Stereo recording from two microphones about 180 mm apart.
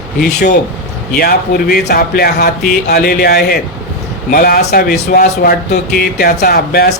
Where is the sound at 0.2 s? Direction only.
65° left (ahead or behind).